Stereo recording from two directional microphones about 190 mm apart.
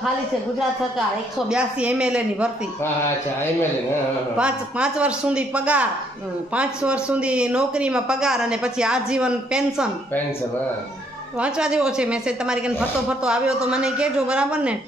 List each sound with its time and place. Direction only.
1.5 s speech: 5° right (ahead or behind)
4.4 s speech: 5° right (ahead or behind)
11.3 s speech: 5° right (ahead or behind)